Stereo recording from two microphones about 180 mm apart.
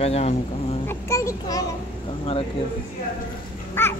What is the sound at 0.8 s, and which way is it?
Speech, 15° left (ahead or behind).